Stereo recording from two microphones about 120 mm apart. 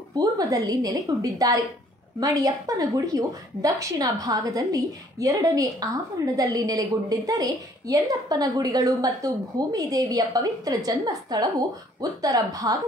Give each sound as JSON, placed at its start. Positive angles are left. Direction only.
{"t": 0.1, "sound": "a woman's voice", "side_deg": -30}